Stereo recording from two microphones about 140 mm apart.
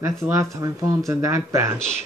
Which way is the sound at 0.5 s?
25° right (ahead or behind).